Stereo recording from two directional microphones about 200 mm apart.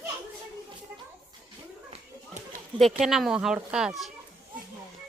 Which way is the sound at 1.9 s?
35° right (ahead or behind).